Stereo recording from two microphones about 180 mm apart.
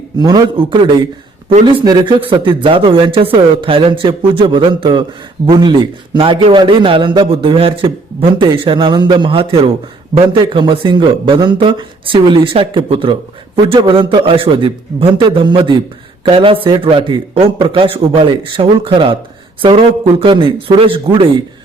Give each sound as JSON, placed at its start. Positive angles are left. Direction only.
{"t": 0.2, "sound": "a man's voice", "side_deg": -25}